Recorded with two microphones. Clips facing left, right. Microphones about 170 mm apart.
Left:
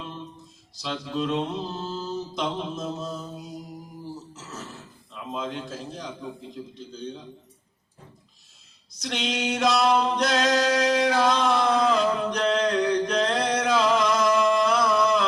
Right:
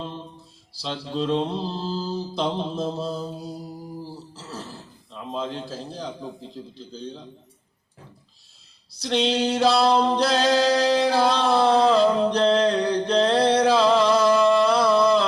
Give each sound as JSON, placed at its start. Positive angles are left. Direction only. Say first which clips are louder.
{"t": 0.7, "sound": "mantra", "louder": "right 1 dB", "side_deg": -30}
{"t": 4.0, "sound": "speech", "louder": "even", "side_deg": -30}
{"t": 8.9, "sound": "singing", "louder": "right 7 dB", "side_deg": -30}